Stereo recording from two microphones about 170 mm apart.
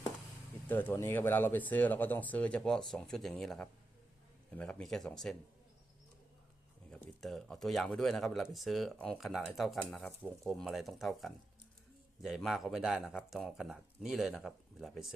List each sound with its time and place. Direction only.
0.7 s speech: 10° left (ahead or behind)
6.9 s speech: centre (ahead or behind)